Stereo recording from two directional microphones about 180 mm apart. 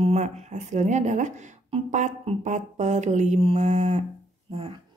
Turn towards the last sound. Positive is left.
turn(degrees=-30)  # may be behind; listen again after turning